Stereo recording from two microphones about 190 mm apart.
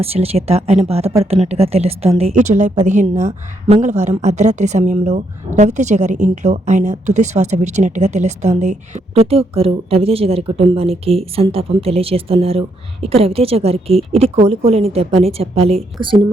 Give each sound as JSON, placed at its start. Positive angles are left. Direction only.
{"t": 0.0, "sound": "a woman's voice", "side_deg": -30}